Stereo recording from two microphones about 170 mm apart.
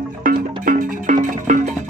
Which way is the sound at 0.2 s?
55° right (ahead or behind).